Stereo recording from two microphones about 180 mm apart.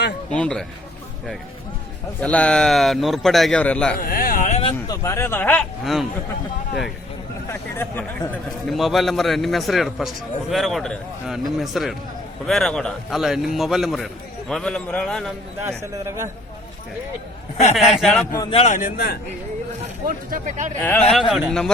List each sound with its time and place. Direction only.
0.3 s a man's voice: 5° left (ahead or behind)
2.2 s a man's voice: 5° left (ahead or behind)
3.9 s a sound: 55° left (ahead or behind)
4.9 s speech: 15° left (ahead or behind); by 6.1 s centre (ahead or behind)
7.5 s a man's voice: 10° left (ahead or behind)
15.8 s a man's voice: 15° right (ahead or behind)
18.0 s a man's voice: centre (ahead or behind)
18.5 s speech: 40° left (ahead or behind); by 19.2 s 60° left (ahead or behind)
20.1 s speech: 50° right (ahead or behind)
20.8 s a man's voice: 5° left (ahead or behind)